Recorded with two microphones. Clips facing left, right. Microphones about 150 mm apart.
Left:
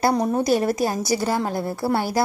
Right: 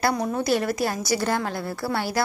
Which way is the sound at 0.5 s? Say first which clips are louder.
Left 1 dB; 35° left (ahead or behind).